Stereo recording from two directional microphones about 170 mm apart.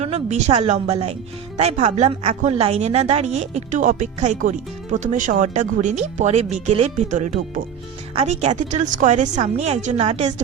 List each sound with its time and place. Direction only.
0.0 s a woman's voice: 40° right (ahead or behind)